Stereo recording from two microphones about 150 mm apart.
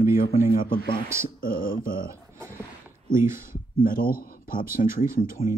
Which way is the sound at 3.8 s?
70° left (ahead or behind).